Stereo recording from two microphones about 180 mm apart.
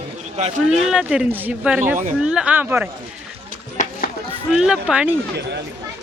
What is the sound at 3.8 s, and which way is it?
Music, 40° left (ahead or behind).